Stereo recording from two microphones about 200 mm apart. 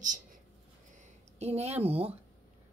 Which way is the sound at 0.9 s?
30° right (ahead or behind).